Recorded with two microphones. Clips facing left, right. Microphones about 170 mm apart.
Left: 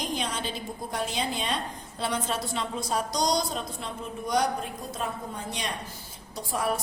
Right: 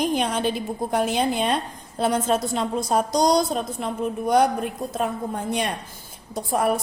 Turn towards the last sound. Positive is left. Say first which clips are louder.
# right 7 dB
turn(degrees=-55)  # may be behind; listen again after turning